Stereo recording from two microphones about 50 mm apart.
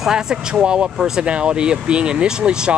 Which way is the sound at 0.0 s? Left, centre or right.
Centre.